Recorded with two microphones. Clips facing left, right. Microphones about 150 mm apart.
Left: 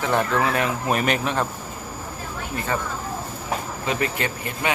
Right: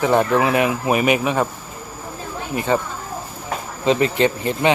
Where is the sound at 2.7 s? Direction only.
20° right (ahead or behind).